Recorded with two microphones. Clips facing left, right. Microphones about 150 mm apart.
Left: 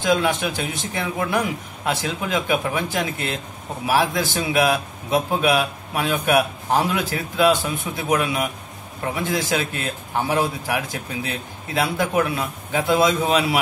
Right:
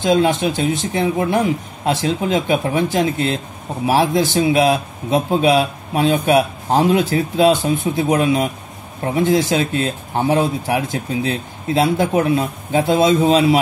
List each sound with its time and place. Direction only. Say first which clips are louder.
0.0 s a man's voice: right 5 dB; 25° right (ahead or behind)